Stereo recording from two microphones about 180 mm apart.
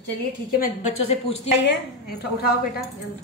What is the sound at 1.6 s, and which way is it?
A woman's voice, 70° left (ahead or behind).